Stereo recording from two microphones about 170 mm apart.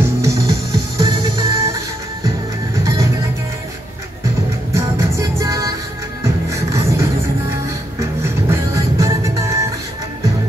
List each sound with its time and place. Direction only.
0.2 s music: 20° right (ahead or behind)
4.7 s music: 15° right (ahead or behind)